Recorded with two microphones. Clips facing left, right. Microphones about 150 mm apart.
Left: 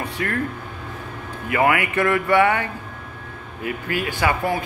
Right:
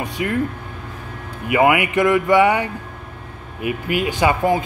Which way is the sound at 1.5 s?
15° right (ahead or behind).